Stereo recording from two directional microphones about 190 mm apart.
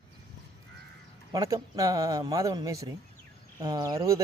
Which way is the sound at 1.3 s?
15° right (ahead or behind).